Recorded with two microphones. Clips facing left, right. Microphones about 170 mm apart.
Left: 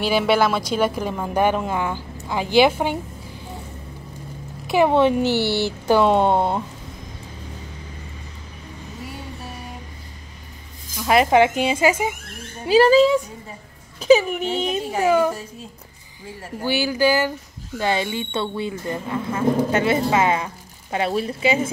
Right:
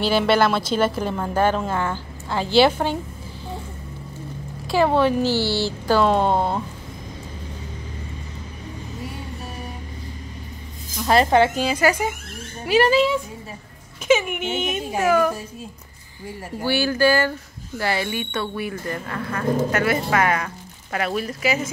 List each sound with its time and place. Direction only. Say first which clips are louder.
0.0 s a woman's voice: even; 10° left (ahead or behind)
4.6 s speech: left 2 dB; 20° left (ahead or behind)
11.0 s a woman's voice: left 1 dB; 10° left (ahead or behind)
12.6 s speech: left 4 dB; 30° left (ahead or behind)
16.6 s a woman's voice: even; 15° left (ahead or behind)